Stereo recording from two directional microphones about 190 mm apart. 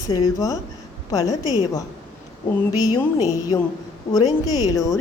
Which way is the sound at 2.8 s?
20° left (ahead or behind).